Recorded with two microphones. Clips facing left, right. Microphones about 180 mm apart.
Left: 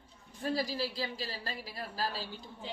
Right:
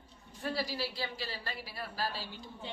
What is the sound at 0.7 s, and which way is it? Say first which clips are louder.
A woman's voice: left 2 dB; 40° left (ahead or behind).